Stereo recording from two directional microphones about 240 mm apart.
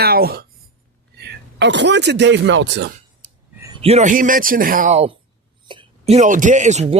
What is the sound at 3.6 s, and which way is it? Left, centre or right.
Speech, centre.